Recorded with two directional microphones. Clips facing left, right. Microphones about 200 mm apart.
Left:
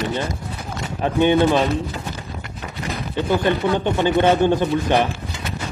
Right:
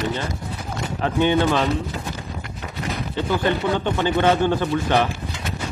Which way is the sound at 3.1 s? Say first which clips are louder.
Left 3 dB; 15° left (ahead or behind).